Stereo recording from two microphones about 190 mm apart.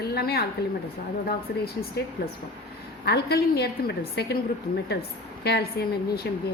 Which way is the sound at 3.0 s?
55° left (ahead or behind).